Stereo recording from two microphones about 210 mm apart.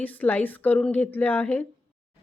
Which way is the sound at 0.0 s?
10° left (ahead or behind).